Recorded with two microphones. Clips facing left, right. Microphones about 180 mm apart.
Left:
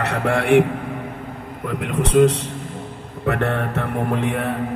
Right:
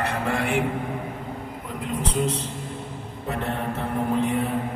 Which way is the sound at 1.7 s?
75° left (ahead or behind).